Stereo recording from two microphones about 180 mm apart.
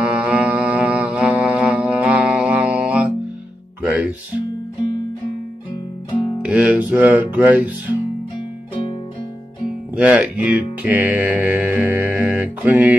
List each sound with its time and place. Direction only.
0.0 s music: 5° right (ahead or behind)
6.4 s speech: 5° right (ahead or behind)
9.9 s speech: 5° right (ahead or behind)